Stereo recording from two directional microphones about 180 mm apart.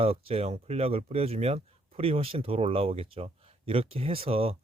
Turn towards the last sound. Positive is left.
turn(degrees=-30)  # may be behind; listen again after turning